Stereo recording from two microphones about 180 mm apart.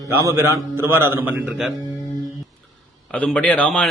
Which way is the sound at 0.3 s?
15° right (ahead or behind).